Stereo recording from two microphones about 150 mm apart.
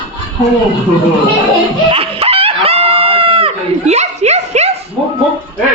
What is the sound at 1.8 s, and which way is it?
Chicken, 40° right (ahead or behind).